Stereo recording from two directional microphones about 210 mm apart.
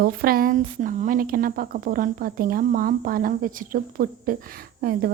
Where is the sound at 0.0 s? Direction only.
45° right (ahead or behind).